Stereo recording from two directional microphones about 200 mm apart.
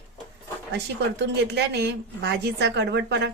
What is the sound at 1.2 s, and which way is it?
A woman's voice, 55° right (ahead or behind).